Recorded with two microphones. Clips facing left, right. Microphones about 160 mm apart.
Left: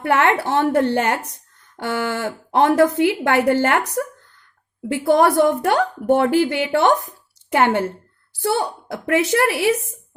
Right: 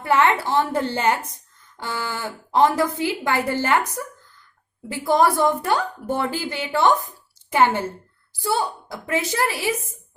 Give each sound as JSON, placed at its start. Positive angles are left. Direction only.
{"t": 0.0, "sound": "a woman's voice", "side_deg": 65}